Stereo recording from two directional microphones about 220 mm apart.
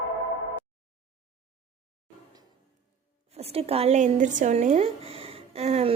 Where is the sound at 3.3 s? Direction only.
25° right (ahead or behind).